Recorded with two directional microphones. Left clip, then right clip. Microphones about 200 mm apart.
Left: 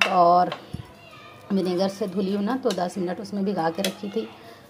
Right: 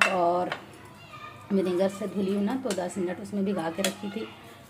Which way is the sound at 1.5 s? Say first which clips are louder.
Left 1 dB; 25° left (ahead or behind).